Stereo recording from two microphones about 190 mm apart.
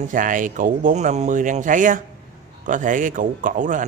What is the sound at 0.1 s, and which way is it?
A man's voice, 45° right (ahead or behind).